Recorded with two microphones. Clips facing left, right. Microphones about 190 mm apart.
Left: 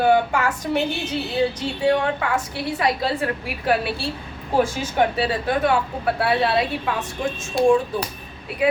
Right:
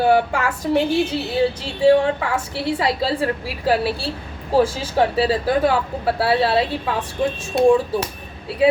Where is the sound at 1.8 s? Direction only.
30° right (ahead or behind).